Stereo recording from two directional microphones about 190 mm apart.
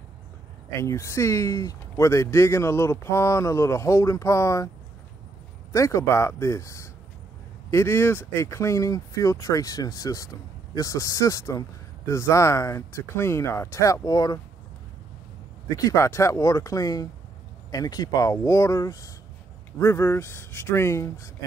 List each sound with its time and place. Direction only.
0.7 s a man's voice: 15° left (ahead or behind)
5.7 s a man's voice: 15° left (ahead or behind)
15.7 s a man's voice: 15° left (ahead or behind)